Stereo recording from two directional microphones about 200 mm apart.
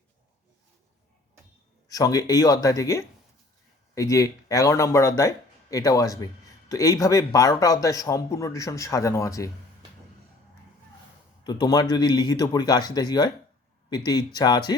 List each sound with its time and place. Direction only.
1.9 s speech: 20° left (ahead or behind)
11.4 s speech: 20° left (ahead or behind)